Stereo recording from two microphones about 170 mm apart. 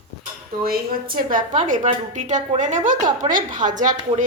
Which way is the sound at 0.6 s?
60° right (ahead or behind).